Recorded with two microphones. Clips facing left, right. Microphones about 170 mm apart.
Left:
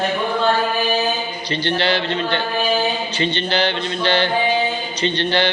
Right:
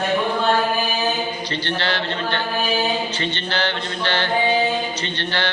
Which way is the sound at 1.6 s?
15° left (ahead or behind).